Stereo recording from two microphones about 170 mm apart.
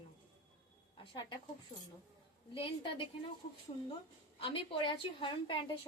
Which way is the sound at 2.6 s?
30° left (ahead or behind).